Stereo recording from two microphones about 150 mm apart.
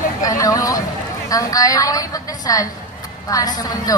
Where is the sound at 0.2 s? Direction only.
25° left (ahead or behind).